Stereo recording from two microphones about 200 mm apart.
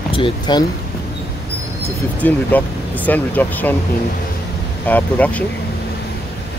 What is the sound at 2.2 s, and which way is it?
Speech, 10° left (ahead or behind).